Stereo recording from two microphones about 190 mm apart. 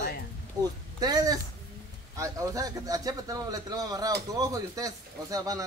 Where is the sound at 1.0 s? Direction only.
20° right (ahead or behind).